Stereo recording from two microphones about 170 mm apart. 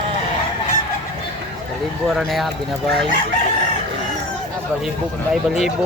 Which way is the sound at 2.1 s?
Centre (ahead or behind).